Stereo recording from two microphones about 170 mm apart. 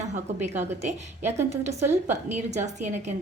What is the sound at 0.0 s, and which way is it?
A woman's voice, 45° right (ahead or behind).